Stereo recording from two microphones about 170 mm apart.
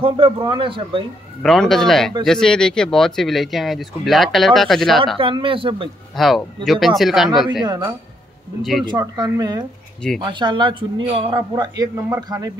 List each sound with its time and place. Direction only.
0.0 s speech: 30° right (ahead or behind)
1.4 s speech: centre (ahead or behind)
5.0 s speech: 30° right (ahead or behind)
6.1 s speech: centre (ahead or behind)
7.6 s speech: 25° right (ahead or behind)